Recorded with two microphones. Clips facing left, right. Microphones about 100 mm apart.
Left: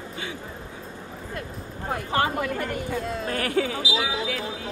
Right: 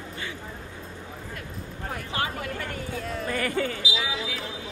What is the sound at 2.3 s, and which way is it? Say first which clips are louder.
Speech: left 6 dB; 25° left (ahead or behind).